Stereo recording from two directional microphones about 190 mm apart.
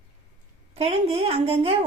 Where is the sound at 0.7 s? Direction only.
30° right (ahead or behind).